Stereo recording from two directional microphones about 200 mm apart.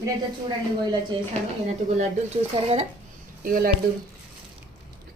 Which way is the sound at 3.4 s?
45° right (ahead or behind).